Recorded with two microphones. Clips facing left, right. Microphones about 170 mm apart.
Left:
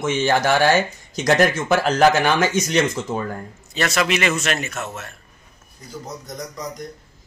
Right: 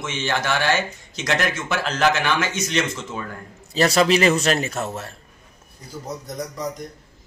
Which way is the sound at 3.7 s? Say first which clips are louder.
Right 4 dB; 30° right (ahead or behind).